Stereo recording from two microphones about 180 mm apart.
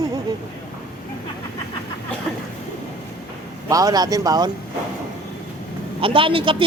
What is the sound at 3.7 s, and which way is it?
Speech, 20° right (ahead or behind).